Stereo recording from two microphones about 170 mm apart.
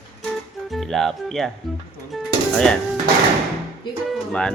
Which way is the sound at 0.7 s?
Centre (ahead or behind).